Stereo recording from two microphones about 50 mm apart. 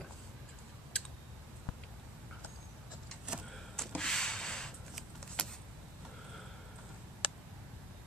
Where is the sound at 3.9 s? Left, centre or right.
Centre.